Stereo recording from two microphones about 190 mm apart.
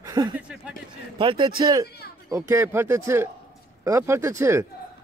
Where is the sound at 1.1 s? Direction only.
25° right (ahead or behind).